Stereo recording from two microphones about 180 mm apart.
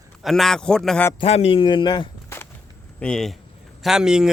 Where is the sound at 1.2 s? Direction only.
35° left (ahead or behind).